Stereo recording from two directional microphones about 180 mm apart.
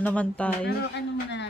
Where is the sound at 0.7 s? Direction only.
75° left (ahead or behind).